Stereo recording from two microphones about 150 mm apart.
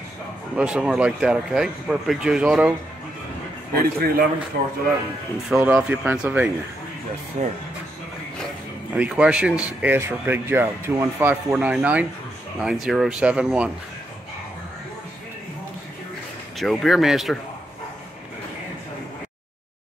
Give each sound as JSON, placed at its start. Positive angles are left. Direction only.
{"t": 0.6, "sound": "speech", "side_deg": -5}
{"t": 3.7, "sound": "a man's voice", "side_deg": -80}
{"t": 5.5, "sound": "speech", "side_deg": -10}
{"t": 7.3, "sound": "speech", "side_deg": -50}
{"t": 8.9, "sound": "speech", "side_deg": -5}
{"t": 16.5, "sound": "speech", "side_deg": 0}